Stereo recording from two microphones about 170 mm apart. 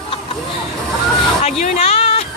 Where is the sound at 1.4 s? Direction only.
40° left (ahead or behind).